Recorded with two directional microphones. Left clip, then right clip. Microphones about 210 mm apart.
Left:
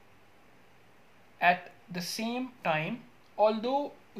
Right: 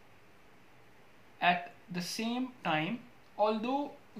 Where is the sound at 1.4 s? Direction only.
35° left (ahead or behind).